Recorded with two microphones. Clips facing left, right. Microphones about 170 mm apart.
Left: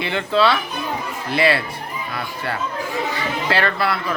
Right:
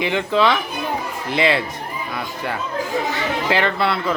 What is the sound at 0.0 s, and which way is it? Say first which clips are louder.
A child's voice: right 1 dB; 15° right (ahead or behind).